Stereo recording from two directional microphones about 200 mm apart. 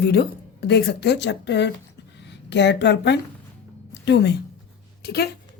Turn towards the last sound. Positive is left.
turn(degrees=55)  # may be behind; listen again after turning